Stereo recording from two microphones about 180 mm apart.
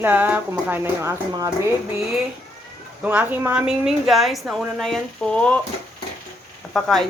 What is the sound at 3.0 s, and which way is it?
A woman's voice, 10° right (ahead or behind).